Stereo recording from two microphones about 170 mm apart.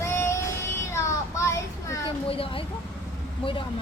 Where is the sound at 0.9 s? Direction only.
15° left (ahead or behind).